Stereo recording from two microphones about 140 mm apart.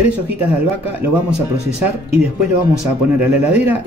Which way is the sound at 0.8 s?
10° right (ahead or behind).